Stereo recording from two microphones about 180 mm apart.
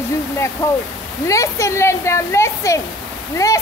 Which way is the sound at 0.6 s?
15° left (ahead or behind).